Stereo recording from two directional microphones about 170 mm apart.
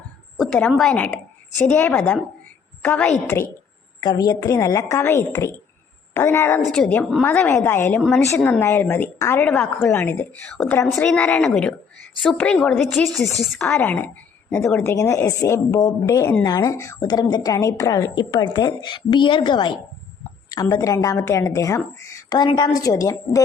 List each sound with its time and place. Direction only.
0.3 s a woman's voice: 5° left (ahead or behind)
4.0 s a woman's voice: 25° left (ahead or behind)
6.6 s a woman's voice: 5° left (ahead or behind)
13.6 s a woman's voice: 10° left (ahead or behind)